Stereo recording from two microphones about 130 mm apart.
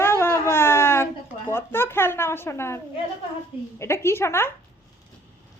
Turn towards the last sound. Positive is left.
turn(degrees=20)  # may be behind; listen again after turning